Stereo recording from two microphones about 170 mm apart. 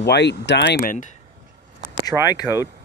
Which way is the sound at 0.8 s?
50° left (ahead or behind).